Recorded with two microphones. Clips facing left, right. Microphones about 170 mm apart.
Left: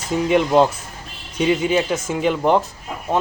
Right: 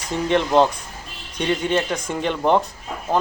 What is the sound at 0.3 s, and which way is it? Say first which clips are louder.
A man's voice: left 1 dB; 5° left (ahead or behind).